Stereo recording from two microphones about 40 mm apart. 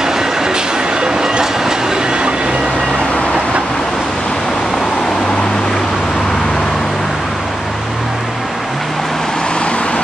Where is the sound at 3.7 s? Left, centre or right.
Centre.